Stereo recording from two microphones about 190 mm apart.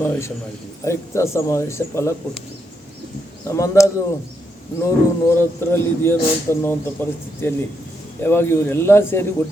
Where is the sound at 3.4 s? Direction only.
15° left (ahead or behind).